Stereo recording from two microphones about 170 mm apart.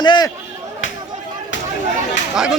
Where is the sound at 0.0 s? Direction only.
25° left (ahead or behind).